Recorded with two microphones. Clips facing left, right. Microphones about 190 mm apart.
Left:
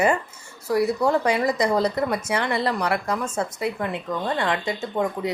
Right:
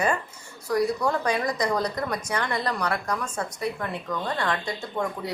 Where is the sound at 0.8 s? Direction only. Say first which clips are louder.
Left 4 dB; 25° left (ahead or behind).